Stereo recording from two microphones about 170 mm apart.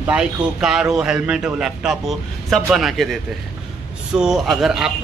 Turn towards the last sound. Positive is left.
turn(degrees=-5)  # may be behind; listen again after turning